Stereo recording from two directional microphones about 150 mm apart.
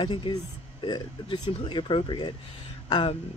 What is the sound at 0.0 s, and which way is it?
Speech, 30° left (ahead or behind).